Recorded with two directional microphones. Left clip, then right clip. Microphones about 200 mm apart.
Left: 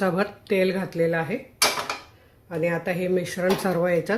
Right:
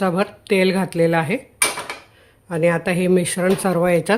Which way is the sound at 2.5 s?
35° right (ahead or behind).